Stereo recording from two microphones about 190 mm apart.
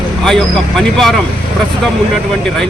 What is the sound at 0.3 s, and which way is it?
Speech, centre (ahead or behind).